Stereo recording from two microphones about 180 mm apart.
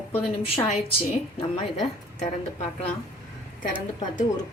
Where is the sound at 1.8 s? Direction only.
40° left (ahead or behind).